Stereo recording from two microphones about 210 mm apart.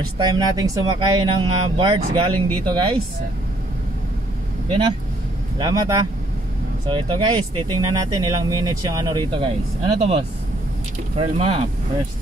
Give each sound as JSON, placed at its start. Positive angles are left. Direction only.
{"t": 0.2, "sound": "speech", "side_deg": -20}
{"t": 5.6, "sound": "speech", "side_deg": -20}